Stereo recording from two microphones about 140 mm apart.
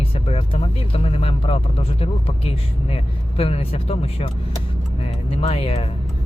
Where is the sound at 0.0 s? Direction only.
45° left (ahead or behind).